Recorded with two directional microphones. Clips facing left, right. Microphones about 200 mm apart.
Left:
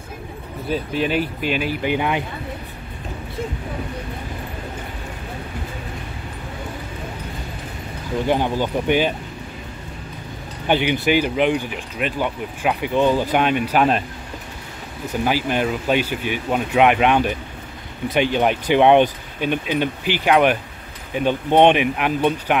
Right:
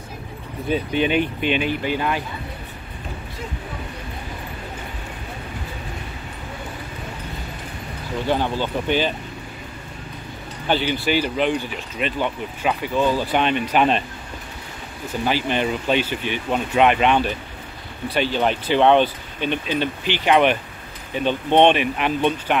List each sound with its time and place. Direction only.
0.7 s speech: centre (ahead or behind)
1.9 s speech: 15° left (ahead or behind)
8.3 s speech: 15° left (ahead or behind)
10.7 s speech: 15° left (ahead or behind)
15.2 s speech: 10° left (ahead or behind)